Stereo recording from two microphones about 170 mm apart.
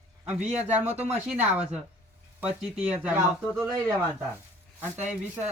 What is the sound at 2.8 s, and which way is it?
Speech, 5° right (ahead or behind).